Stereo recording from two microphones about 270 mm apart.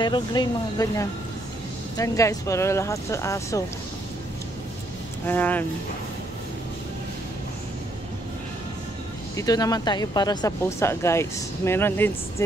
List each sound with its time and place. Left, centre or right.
0.0 s speech: centre
5.2 s speech: centre
9.4 s speech: centre